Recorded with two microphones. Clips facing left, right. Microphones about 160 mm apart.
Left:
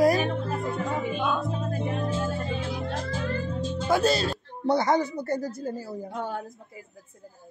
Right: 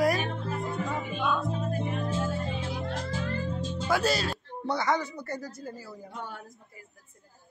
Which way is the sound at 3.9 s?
25° left (ahead or behind).